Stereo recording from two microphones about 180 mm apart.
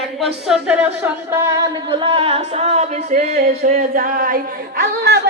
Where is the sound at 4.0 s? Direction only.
50° right (ahead or behind).